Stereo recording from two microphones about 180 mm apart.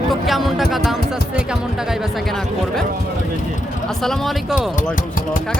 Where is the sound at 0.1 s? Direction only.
Centre (ahead or behind).